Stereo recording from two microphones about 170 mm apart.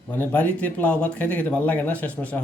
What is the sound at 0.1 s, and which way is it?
Speech, 10° left (ahead or behind).